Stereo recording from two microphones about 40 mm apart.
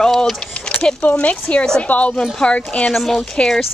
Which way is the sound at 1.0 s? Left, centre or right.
Left.